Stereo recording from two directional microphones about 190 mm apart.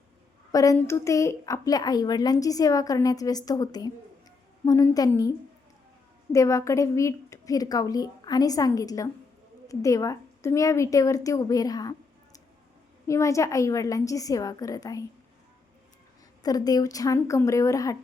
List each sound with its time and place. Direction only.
0.5 s a woman's voice: 15° left (ahead or behind)
6.3 s a woman's voice: 15° left (ahead or behind)
16.4 s a woman's voice: 20° left (ahead or behind)